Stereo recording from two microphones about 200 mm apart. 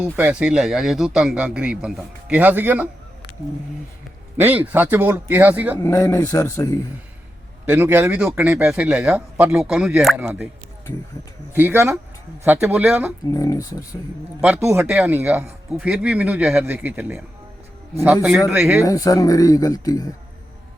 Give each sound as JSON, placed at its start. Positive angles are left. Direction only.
{"t": 0.0, "sound": "speech", "side_deg": -5}
{"t": 4.4, "sound": "speech", "side_deg": -10}
{"t": 5.8, "sound": "speech", "side_deg": 15}
{"t": 7.6, "sound": "speech", "side_deg": -10}
{"t": 11.5, "sound": "speech", "side_deg": -10}
{"t": 13.3, "sound": "speech", "side_deg": 15}
{"t": 14.4, "sound": "speech", "side_deg": -10}
{"t": 18.8, "sound": "speech", "side_deg": 15}